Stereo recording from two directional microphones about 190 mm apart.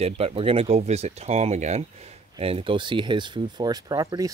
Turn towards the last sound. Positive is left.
turn(degrees=-20)  # may be behind; listen again after turning